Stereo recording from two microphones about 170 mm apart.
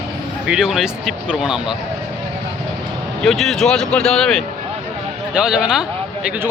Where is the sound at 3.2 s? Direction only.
Centre (ahead or behind).